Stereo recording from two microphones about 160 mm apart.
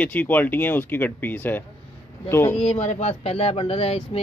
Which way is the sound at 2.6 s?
40° left (ahead or behind).